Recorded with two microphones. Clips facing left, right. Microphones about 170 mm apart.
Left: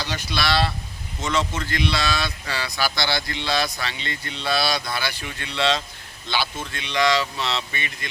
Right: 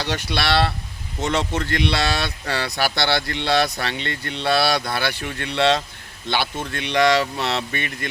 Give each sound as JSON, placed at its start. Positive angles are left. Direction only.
{"t": 0.0, "sound": "speech", "side_deg": -65}